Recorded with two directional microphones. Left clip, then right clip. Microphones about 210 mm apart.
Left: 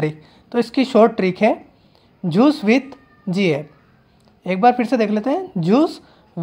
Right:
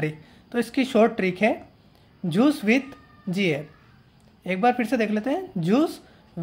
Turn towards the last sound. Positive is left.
turn(degrees=10)  # may be behind; listen again after turning